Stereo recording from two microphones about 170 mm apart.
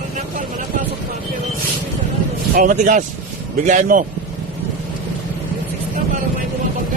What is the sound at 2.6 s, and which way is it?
Speech, 50° right (ahead or behind).